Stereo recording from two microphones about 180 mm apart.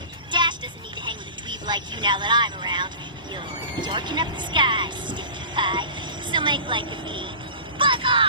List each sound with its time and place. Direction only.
0.3 s vehicle: 25° right (ahead or behind)
3.3 s speech: 25° right (ahead or behind)